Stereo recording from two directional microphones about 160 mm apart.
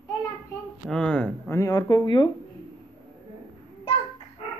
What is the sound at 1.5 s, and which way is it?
Speech, 25° left (ahead or behind).